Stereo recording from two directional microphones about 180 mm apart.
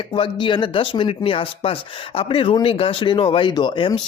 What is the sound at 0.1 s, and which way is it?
Speech, 25° left (ahead or behind).